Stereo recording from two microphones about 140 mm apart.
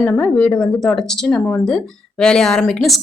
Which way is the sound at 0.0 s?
10° left (ahead or behind).